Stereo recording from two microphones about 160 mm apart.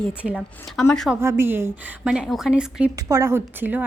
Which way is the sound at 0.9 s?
5° left (ahead or behind).